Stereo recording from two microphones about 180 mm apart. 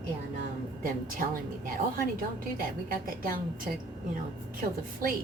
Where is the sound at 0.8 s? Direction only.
50° right (ahead or behind).